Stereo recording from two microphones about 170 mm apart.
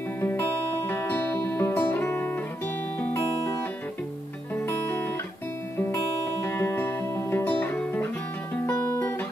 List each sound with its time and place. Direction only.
0.2 s music: 10° left (ahead or behind)
6.4 s music: 15° left (ahead or behind)